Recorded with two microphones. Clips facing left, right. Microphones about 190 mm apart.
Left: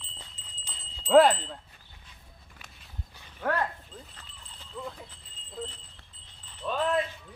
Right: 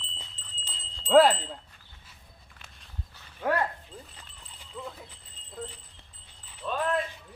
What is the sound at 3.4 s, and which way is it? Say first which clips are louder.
Speech: right 2 dB; 10° right (ahead or behind).